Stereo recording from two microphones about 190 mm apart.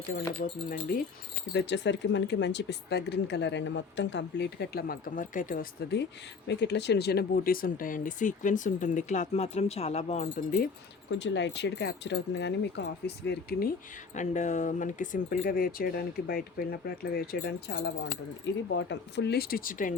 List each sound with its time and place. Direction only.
0.1 s speech: 50° left (ahead or behind)
1.5 s speech: 65° left (ahead or behind); by 10.6 s 35° left (ahead or behind)
11.1 s speech: 65° left (ahead or behind)
14.2 s speech: 40° left (ahead or behind)